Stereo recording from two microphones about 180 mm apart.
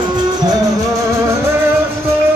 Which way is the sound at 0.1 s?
25° right (ahead or behind).